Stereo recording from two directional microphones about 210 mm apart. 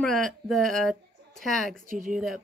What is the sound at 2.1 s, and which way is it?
Speech, centre (ahead or behind).